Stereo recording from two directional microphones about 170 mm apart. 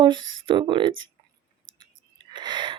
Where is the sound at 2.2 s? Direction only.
25° right (ahead or behind).